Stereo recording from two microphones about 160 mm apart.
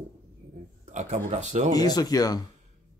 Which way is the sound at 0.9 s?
45° right (ahead or behind).